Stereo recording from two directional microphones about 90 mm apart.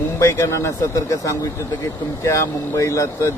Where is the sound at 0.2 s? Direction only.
30° left (ahead or behind).